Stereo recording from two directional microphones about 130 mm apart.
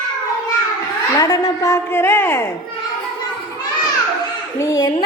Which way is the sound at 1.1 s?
30° left (ahead or behind).